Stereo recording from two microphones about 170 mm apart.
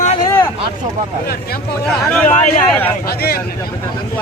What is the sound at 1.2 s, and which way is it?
Speech, 60° left (ahead or behind).